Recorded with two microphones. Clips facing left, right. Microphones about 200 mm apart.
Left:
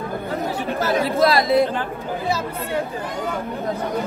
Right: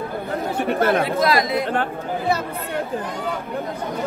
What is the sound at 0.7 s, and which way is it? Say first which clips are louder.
Speech: right 2 dB; 55° right (ahead or behind).